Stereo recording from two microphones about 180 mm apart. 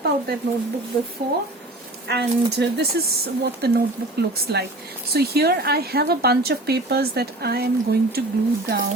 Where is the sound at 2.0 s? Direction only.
65° right (ahead or behind).